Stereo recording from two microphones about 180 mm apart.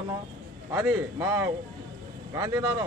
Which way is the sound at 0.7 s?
10° right (ahead or behind).